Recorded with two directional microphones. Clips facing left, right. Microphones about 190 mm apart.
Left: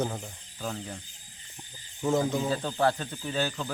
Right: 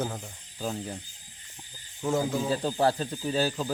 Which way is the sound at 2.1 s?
5° right (ahead or behind).